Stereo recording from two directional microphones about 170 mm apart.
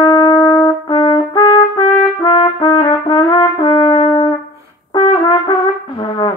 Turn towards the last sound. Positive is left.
turn(degrees=25)  # may be behind; listen again after turning